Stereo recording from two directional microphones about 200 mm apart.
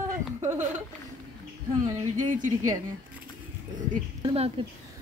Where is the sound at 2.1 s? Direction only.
40° right (ahead or behind).